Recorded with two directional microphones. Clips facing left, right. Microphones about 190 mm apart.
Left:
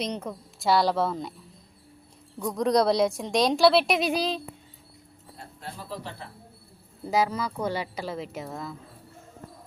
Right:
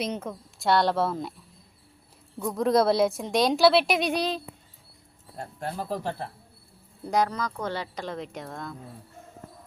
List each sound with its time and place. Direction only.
0.0 s speech: 5° right (ahead or behind)
2.4 s speech: 5° right (ahead or behind)
5.4 s speech: 50° right (ahead or behind)
7.0 s speech: 5° left (ahead or behind)